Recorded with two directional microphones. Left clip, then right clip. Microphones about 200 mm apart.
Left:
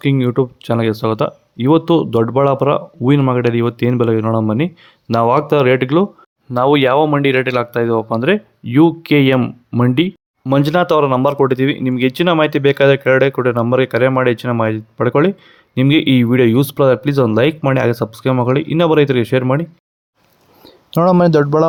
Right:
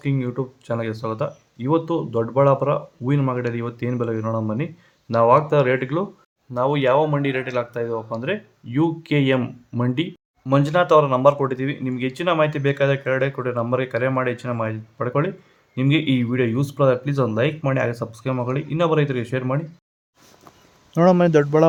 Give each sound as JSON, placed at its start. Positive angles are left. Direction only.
{"t": 0.0, "sound": "speech", "side_deg": 50}
{"t": 20.9, "sound": "speech", "side_deg": 30}